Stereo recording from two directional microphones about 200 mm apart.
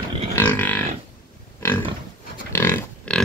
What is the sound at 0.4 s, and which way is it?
Livestock, 10° left (ahead or behind).